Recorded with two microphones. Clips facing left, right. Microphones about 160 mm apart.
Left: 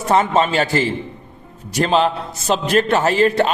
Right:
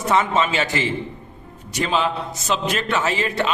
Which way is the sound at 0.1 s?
40° left (ahead or behind).